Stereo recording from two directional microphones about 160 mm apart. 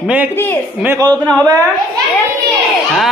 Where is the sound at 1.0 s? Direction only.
25° right (ahead or behind).